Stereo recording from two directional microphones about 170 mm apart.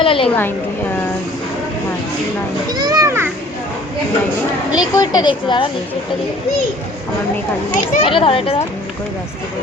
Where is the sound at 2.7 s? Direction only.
20° right (ahead or behind).